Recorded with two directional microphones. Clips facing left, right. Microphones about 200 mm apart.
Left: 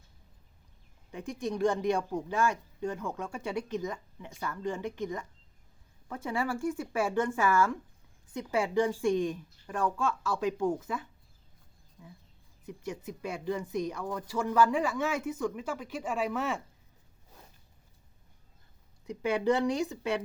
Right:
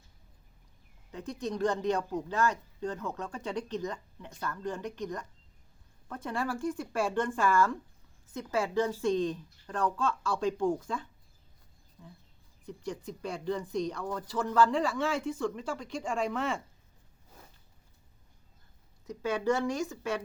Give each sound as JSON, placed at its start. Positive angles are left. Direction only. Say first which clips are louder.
{"t": 1.1, "sound": "speech", "louder": "left 1 dB", "side_deg": 15}
{"t": 19.0, "sound": "speech", "louder": "left 2 dB", "side_deg": 15}